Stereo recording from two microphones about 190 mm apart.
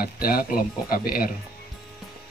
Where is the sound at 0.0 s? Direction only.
50° left (ahead or behind).